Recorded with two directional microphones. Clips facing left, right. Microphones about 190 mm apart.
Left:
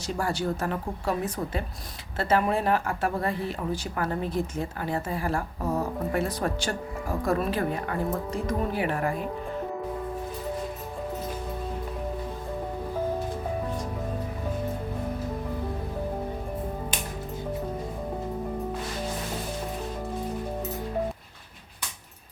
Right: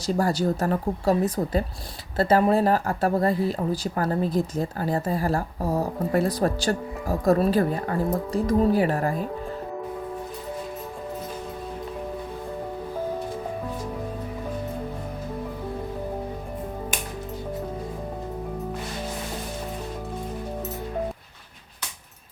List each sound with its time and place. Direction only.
0.0 s a woman's voice: 40° right (ahead or behind)